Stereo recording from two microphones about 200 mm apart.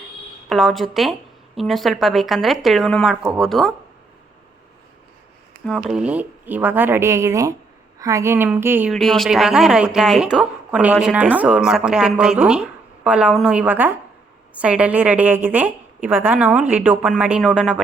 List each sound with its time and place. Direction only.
0.4 s speech: centre (ahead or behind)
5.5 s a sound: 50° right (ahead or behind)
5.9 s a woman's voice: 5° right (ahead or behind)
8.9 s a woman's voice: centre (ahead or behind)